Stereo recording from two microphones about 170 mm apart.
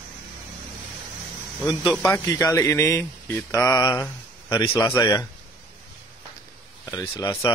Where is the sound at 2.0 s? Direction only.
15° left (ahead or behind).